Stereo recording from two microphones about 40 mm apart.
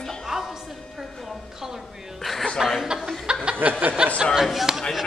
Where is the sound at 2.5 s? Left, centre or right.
Centre.